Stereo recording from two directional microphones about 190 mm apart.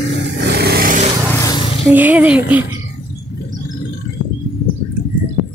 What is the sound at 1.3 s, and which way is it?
Vehicle, 15° left (ahead or behind).